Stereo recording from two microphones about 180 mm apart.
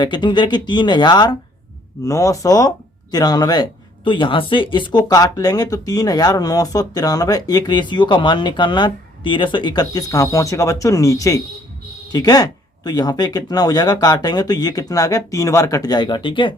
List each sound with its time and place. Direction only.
0.0 s speech: 25° left (ahead or behind)